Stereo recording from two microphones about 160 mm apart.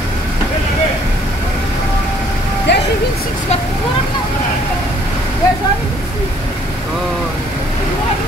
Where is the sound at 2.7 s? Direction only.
90° left.